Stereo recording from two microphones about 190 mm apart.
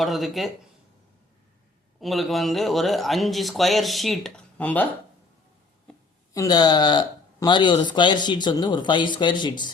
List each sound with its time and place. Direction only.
0.0 s speech: centre (ahead or behind)
2.0 s speech: centre (ahead or behind)
6.3 s speech: 20° left (ahead or behind)